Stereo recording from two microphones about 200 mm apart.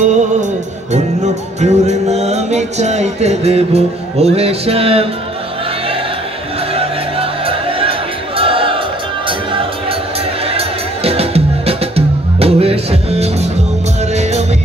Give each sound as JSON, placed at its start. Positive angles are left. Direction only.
{"t": 0.0, "sound": "music", "side_deg": -35}
{"t": 6.7, "sound": "music", "side_deg": -30}
{"t": 11.1, "sound": "music", "side_deg": -30}